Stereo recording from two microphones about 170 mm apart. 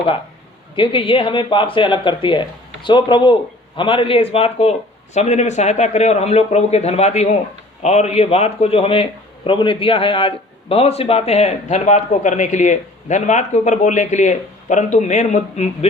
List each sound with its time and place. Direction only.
0.8 s a man's voice: 30° left (ahead or behind)